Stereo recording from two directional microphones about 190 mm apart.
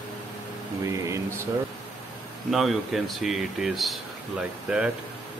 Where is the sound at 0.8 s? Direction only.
15° right (ahead or behind).